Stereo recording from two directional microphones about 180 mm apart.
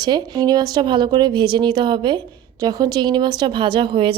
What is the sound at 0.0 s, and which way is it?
A woman's voice, 20° right (ahead or behind).